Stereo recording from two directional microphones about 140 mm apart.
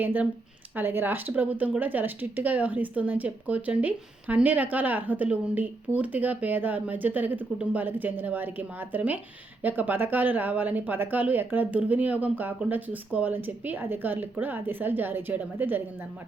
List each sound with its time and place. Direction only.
0.0 s speech: 15° right (ahead or behind)